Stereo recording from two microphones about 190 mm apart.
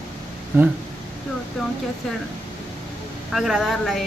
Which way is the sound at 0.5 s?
10° right (ahead or behind).